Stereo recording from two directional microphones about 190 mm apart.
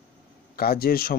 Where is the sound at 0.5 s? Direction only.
50° left (ahead or behind).